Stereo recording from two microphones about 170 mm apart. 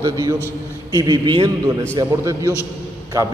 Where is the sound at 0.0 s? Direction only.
20° right (ahead or behind).